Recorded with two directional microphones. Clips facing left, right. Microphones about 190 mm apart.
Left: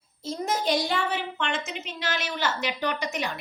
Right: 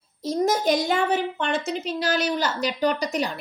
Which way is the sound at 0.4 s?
45° right (ahead or behind).